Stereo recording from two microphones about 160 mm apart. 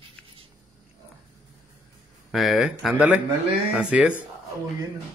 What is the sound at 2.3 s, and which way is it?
A man's voice, centre (ahead or behind).